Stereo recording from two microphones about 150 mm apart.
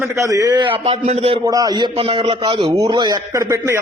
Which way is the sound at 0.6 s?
40° right (ahead or behind).